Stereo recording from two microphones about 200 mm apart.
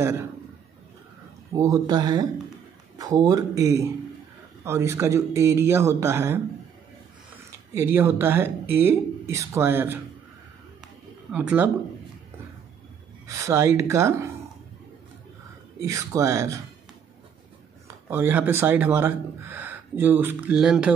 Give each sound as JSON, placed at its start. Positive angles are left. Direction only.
{"t": 1.5, "sound": "speech", "side_deg": -15}
{"t": 7.7, "sound": "speech", "side_deg": -10}
{"t": 11.3, "sound": "speech", "side_deg": -10}
{"t": 13.3, "sound": "speech", "side_deg": -15}
{"t": 15.8, "sound": "speech", "side_deg": -15}
{"t": 17.8, "sound": "speech", "side_deg": -10}